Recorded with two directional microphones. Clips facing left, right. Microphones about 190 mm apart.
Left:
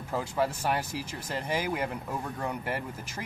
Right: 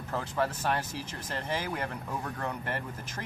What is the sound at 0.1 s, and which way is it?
Speech, 10° left (ahead or behind).